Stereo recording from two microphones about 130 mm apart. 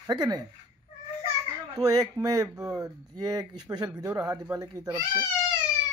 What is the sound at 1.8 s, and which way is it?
Speech, 30° right (ahead or behind).